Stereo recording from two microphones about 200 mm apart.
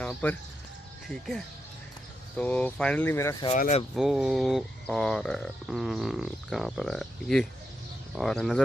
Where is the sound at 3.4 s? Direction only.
35° left (ahead or behind).